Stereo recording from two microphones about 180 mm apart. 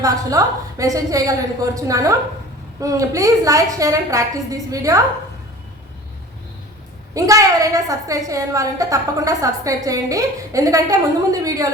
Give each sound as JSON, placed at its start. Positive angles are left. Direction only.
{"t": 0.0, "sound": "a woman's voice", "side_deg": -20}
{"t": 7.1, "sound": "a woman's voice", "side_deg": -20}